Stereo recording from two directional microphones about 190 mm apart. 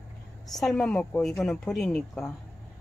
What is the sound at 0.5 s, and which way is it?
Speech, centre (ahead or behind).